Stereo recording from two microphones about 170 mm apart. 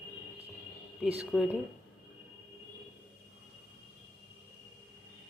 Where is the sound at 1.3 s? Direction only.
5° right (ahead or behind).